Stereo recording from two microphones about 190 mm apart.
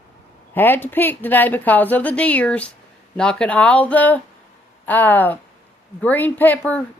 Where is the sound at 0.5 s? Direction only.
10° left (ahead or behind).